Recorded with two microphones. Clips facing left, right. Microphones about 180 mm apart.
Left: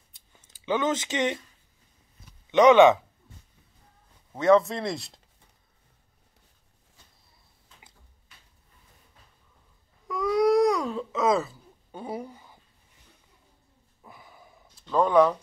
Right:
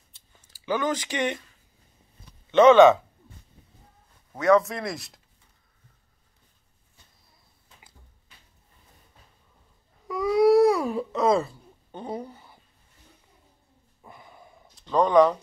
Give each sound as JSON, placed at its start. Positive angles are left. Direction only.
{"t": 0.1, "sound": "scissors", "side_deg": 20}
{"t": 2.5, "sound": "speech", "side_deg": 15}
{"t": 4.4, "sound": "speech", "side_deg": 25}
{"t": 10.0, "sound": "baby cry", "side_deg": 0}
{"t": 11.1, "sound": "speech", "side_deg": 0}
{"t": 14.0, "sound": "a sound", "side_deg": 0}
{"t": 14.9, "sound": "speech", "side_deg": 5}